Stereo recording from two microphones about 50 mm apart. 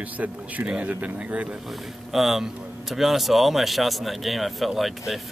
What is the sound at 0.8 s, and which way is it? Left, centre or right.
Speech, right.